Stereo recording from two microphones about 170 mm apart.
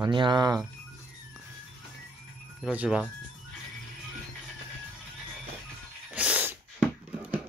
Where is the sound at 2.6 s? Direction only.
5° right (ahead or behind).